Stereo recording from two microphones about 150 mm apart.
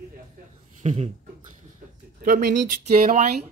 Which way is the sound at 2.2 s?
65° right (ahead or behind).